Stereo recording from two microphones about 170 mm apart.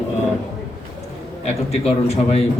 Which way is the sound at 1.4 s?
40° left (ahead or behind).